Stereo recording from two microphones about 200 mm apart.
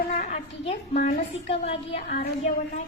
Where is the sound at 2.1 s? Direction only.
50° left (ahead or behind).